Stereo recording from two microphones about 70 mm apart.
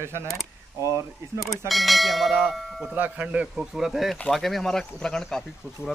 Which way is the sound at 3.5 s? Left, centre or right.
Centre.